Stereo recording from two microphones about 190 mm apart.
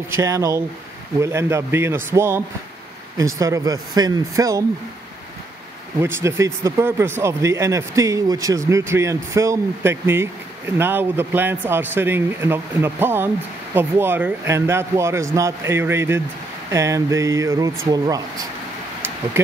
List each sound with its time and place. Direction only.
0.1 s speech: 15° right (ahead or behind)
5.9 s speech: 10° right (ahead or behind)